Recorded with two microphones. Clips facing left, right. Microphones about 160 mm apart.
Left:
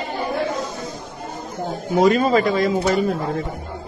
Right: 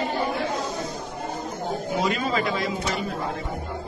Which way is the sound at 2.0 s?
45° left (ahead or behind).